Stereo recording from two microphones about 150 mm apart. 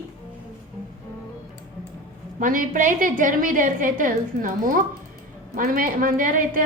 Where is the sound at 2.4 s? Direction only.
60° right (ahead or behind).